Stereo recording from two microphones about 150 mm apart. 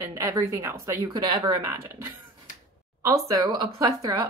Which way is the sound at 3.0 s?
20° right (ahead or behind).